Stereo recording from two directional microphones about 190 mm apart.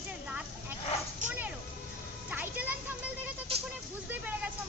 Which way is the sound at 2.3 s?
10° right (ahead or behind).